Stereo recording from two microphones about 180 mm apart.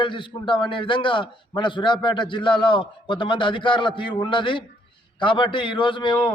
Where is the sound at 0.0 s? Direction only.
25° left (ahead or behind).